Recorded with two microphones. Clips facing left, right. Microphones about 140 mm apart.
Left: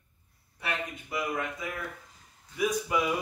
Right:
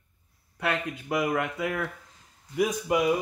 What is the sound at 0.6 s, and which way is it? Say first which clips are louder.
Speech: right 6 dB; 85° right.